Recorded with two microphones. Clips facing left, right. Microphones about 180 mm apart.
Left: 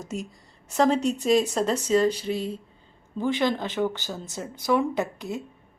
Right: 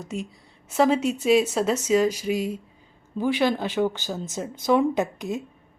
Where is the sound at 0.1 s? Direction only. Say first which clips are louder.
Right 2 dB; centre (ahead or behind); by 5.4 s 20° right (ahead or behind).